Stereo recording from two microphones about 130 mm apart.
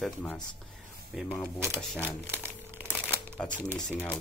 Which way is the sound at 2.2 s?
20° right (ahead or behind).